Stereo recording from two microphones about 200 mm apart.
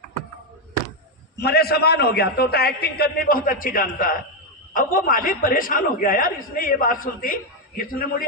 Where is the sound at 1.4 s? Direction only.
50° left (ahead or behind).